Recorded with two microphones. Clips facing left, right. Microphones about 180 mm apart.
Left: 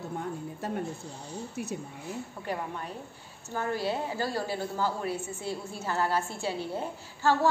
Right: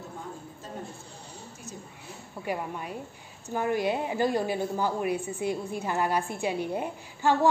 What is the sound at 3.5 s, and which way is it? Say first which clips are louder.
A woman's voice: right 3 dB; 15° right (ahead or behind).